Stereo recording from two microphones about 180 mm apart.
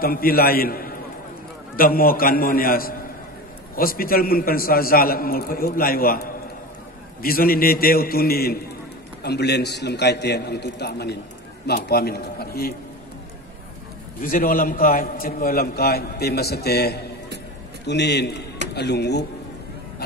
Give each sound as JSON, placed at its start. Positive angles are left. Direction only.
{"t": 0.0, "sound": "a man's voice", "side_deg": 55}
{"t": 14.2, "sound": "a man's voice", "side_deg": 50}